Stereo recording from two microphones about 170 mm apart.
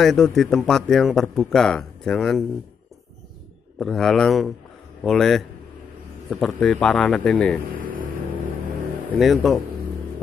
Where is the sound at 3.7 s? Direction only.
Centre (ahead or behind).